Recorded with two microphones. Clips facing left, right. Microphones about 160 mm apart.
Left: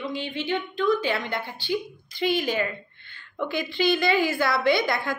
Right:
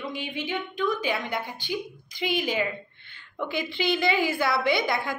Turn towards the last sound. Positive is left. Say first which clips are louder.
# left 2 dB
turn(degrees=-20)  # may be behind; listen again after turning